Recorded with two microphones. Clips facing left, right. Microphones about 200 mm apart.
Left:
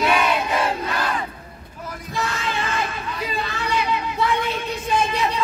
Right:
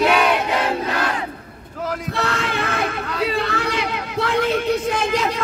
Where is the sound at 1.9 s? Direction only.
70° right (ahead or behind).